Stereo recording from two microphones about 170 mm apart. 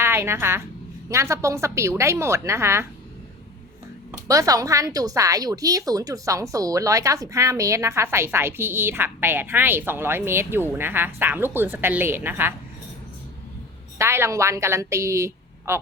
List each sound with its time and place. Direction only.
0.0 s a woman's voice: 15° right (ahead or behind)
4.3 s a woman's voice: 20° right (ahead or behind)
14.0 s a woman's voice: 15° right (ahead or behind)